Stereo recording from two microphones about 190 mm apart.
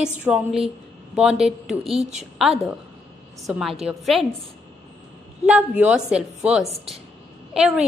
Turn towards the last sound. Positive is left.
turn(degrees=-5)  # may be behind; listen again after turning